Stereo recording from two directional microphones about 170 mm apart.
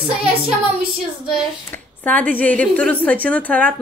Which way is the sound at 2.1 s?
10° left (ahead or behind).